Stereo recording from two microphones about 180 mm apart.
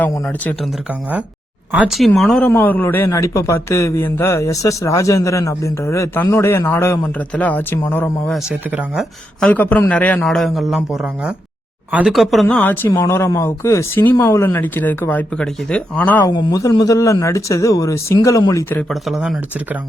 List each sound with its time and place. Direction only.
0.0 s speech: 10° left (ahead or behind)
1.7 s speech: 5° right (ahead or behind); by 8.1 s 10° left (ahead or behind)
8.3 s a man's voice: 5° right (ahead or behind)
9.4 s a man's voice: 10° left (ahead or behind)
16.3 s speech: 20° left (ahead or behind); by 19.4 s centre (ahead or behind)